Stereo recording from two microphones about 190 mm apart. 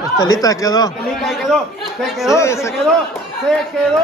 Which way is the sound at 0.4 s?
20° left (ahead or behind).